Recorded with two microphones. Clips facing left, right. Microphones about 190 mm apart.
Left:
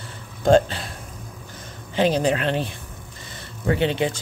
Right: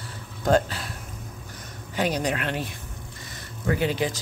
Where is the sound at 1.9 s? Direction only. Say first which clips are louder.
Left 6 dB; 25° left (ahead or behind).